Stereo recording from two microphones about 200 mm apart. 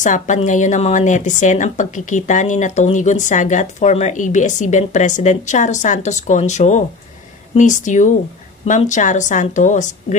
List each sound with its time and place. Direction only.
0.0 s speech: 40° left (ahead or behind)